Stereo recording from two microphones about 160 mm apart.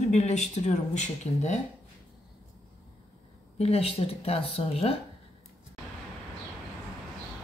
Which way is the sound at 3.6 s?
40° left (ahead or behind).